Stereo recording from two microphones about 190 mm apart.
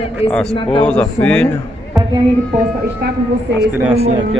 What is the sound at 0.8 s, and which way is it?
Music, 5° left (ahead or behind).